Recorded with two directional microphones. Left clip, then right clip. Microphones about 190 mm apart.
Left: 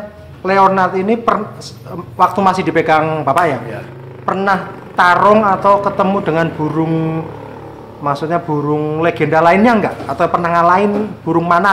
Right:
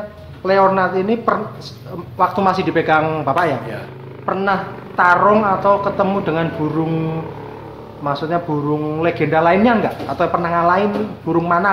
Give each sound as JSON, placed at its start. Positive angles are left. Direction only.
{"t": 0.4, "sound": "speech", "side_deg": 25}
{"t": 8.0, "sound": "speech", "side_deg": 25}